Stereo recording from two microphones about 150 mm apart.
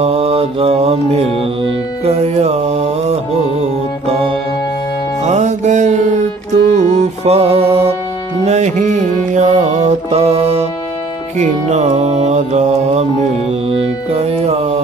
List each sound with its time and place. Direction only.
0.0 s mantra: 40° right (ahead or behind)
5.2 s music: 50° right (ahead or behind)
11.3 s mantra: 50° right (ahead or behind)
13.5 s music: 40° right (ahead or behind)